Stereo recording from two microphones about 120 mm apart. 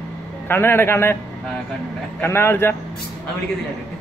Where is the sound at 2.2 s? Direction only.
20° left (ahead or behind).